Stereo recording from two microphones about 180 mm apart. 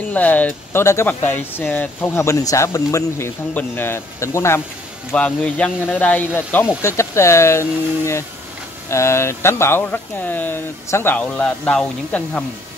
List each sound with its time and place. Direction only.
0.1 s speech: 10° left (ahead or behind)